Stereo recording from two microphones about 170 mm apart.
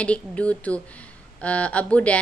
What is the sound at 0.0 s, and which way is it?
A woman's voice, 5° left (ahead or behind).